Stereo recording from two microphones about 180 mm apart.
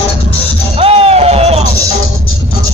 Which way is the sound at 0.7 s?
35° right (ahead or behind).